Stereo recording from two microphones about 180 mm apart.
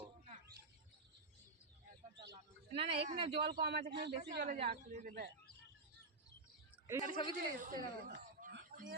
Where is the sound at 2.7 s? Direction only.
30° right (ahead or behind).